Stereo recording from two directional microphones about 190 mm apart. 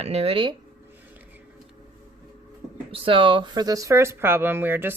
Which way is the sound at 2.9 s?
30° right (ahead or behind).